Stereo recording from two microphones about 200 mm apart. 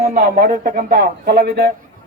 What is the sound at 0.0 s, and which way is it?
Speech, 40° right (ahead or behind).